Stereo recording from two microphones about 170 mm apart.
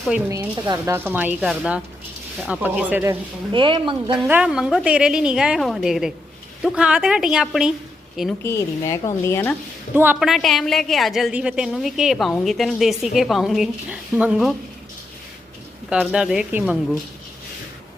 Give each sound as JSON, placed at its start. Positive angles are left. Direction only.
{"t": 0.3, "sound": "speech", "side_deg": -20}
{"t": 3.5, "sound": "speech", "side_deg": -30}
{"t": 4.3, "sound": "a woman's voice", "side_deg": -5}
{"t": 8.4, "sound": "a woman's voice", "side_deg": 20}
{"t": 9.9, "sound": "speech", "side_deg": -10}
{"t": 10.2, "sound": "a woman's voice", "side_deg": 0}
{"t": 15.9, "sound": "a woman's voice", "side_deg": -5}